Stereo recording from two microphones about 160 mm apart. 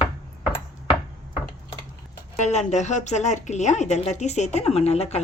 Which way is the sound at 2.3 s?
45° left (ahead or behind).